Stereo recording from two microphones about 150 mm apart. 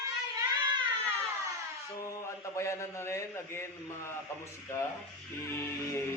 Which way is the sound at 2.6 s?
20° left (ahead or behind).